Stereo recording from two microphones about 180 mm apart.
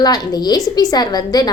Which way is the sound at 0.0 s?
20° left (ahead or behind).